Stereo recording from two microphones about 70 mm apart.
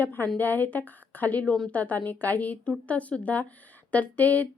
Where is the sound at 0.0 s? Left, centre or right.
Left.